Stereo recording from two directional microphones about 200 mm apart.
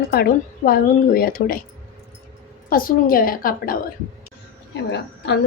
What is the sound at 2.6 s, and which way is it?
A woman's voice, 45° left (ahead or behind).